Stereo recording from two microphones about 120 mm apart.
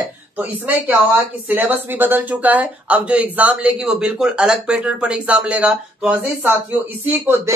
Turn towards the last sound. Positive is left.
turn(degrees=-15)  # may be behind; listen again after turning